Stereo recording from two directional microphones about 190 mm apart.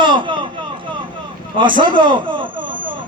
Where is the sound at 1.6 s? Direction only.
25° right (ahead or behind).